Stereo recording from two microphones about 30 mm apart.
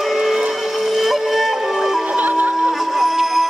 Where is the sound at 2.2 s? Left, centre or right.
Right.